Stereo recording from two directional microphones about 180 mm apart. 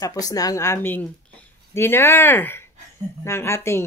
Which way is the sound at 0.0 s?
20° left (ahead or behind).